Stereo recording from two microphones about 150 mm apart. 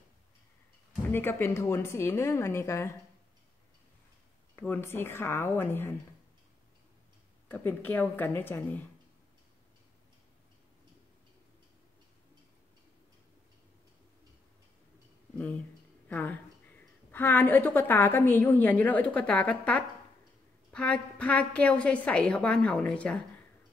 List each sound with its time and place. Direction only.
1.1 s a woman's voice: 15° left (ahead or behind)
4.6 s a woman's voice: 15° left (ahead or behind)
7.4 s a woman's voice: 10° left (ahead or behind)
16.1 s a woman's voice: 10° left (ahead or behind)